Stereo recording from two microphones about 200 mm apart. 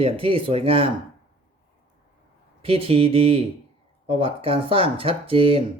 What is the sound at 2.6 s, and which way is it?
Speech, 30° right (ahead or behind).